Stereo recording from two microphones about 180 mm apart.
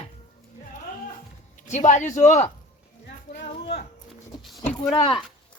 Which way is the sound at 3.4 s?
65° left (ahead or behind).